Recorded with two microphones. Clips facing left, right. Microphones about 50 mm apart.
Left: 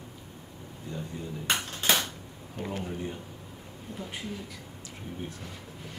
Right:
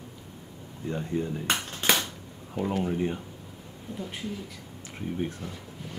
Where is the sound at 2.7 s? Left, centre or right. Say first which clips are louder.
Right 7 dB; right.